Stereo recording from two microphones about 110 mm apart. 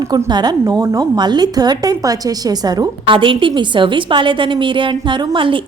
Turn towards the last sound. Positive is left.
turn(degrees=-50)  # may be behind; listen again after turning